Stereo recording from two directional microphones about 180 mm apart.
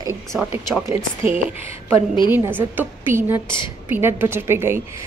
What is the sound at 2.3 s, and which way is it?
Speech, 10° right (ahead or behind).